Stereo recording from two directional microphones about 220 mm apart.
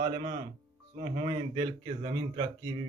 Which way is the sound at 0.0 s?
20° right (ahead or behind).